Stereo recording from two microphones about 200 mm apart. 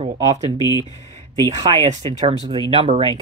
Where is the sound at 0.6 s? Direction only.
20° left (ahead or behind).